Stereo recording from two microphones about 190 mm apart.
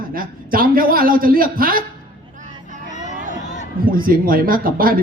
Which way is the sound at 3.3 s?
40° left (ahead or behind).